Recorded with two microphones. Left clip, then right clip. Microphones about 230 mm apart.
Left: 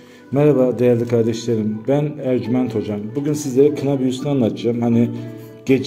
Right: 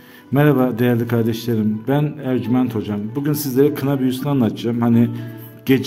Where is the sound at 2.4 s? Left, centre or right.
Right.